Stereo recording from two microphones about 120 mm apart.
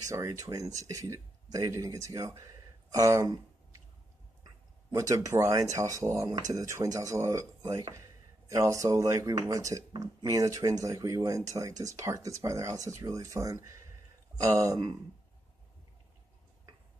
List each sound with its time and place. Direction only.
0.1 s speech: 25° right (ahead or behind)
4.9 s speech: 30° right (ahead or behind)
14.3 s a sound: 10° right (ahead or behind)